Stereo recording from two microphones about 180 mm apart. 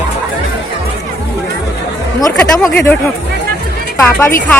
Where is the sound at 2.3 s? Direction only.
5° left (ahead or behind).